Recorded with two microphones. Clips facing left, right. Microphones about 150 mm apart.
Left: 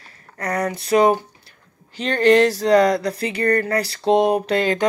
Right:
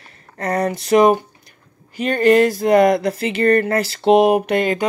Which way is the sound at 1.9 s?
10° right (ahead or behind).